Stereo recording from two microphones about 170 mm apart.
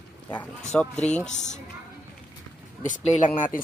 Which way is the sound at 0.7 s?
5° left (ahead or behind).